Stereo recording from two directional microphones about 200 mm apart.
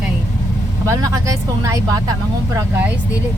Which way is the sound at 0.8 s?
15° right (ahead or behind).